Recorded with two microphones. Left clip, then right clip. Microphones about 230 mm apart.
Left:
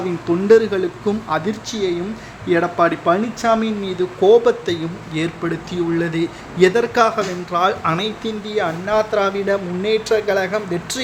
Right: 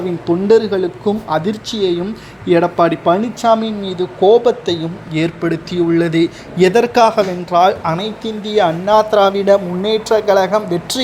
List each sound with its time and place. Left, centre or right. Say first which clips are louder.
0.3 s speech: right 1 dB; centre
1.3 s speech: right 4 dB; centre
8.4 s speech: right 8 dB; right